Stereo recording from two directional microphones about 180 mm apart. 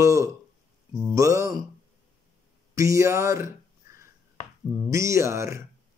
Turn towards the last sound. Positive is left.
turn(degrees=-15)  # may be behind; listen again after turning